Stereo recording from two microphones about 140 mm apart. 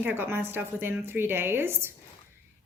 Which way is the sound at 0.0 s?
15° right (ahead or behind).